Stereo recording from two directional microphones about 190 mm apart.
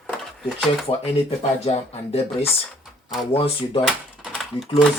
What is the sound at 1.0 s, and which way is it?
Speech, 35° left (ahead or behind).